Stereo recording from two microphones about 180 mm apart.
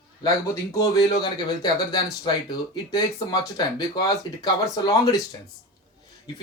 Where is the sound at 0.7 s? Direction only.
20° left (ahead or behind).